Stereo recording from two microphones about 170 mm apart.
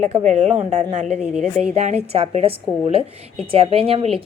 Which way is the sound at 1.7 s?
40° right (ahead or behind).